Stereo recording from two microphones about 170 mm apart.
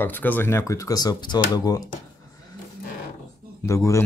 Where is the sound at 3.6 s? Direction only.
15° left (ahead or behind).